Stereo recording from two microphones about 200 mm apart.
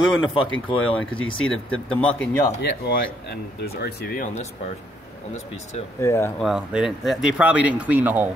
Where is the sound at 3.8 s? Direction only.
40° left (ahead or behind).